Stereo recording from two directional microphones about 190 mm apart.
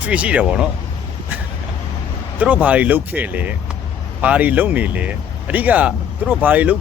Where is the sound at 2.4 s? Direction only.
5° right (ahead or behind).